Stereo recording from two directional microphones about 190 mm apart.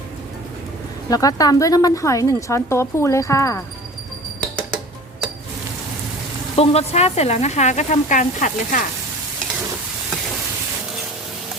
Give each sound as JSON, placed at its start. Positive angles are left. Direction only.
{"t": 1.1, "sound": "speech", "side_deg": 20}
{"t": 6.6, "sound": "speech", "side_deg": 35}